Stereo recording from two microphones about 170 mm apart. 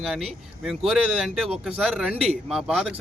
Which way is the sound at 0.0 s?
Centre (ahead or behind).